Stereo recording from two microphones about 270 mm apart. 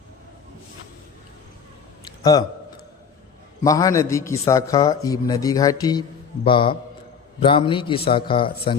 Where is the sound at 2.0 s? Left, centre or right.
Centre.